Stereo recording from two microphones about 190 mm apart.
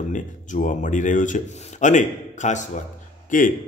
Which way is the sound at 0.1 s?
40° left (ahead or behind).